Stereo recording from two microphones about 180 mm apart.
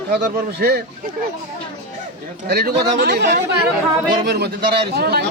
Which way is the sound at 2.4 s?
60° right (ahead or behind).